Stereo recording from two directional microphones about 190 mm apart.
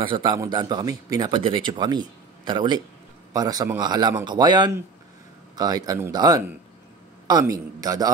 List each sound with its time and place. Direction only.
0.0 s a man's voice: 25° right (ahead or behind)